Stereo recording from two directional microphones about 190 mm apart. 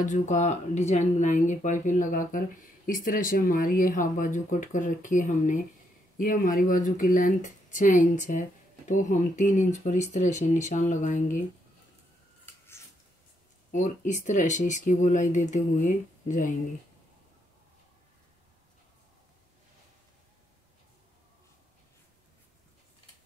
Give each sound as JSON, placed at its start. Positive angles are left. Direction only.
{"t": 0.0, "sound": "speech", "side_deg": 40}
{"t": 13.7, "sound": "speech", "side_deg": 45}